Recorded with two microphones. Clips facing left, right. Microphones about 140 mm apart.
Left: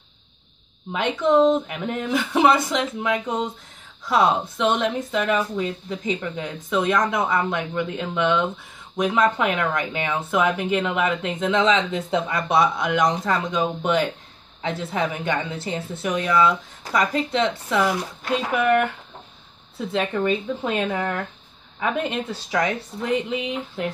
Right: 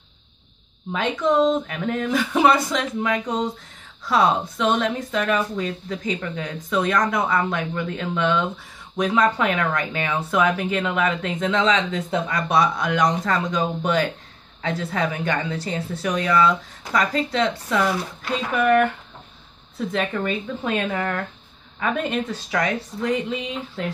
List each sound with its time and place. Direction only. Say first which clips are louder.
0.9 s speech: left 1 dB; 20° left (ahead or behind)
19.9 s speech: left 3 dB; 25° left (ahead or behind)